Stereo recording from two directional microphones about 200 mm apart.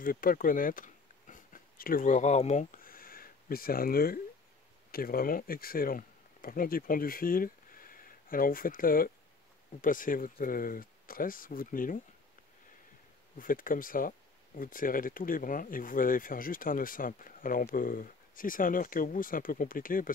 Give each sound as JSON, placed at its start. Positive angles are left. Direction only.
{"t": 0.0, "sound": "speech", "side_deg": 45}
{"t": 13.4, "sound": "speech", "side_deg": 45}